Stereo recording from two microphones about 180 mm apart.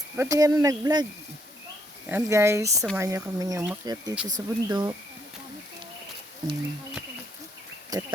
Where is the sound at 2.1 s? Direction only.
15° right (ahead or behind).